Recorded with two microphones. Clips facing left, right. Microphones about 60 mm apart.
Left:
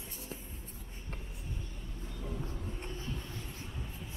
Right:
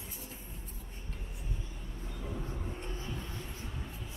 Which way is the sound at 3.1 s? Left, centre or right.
Centre.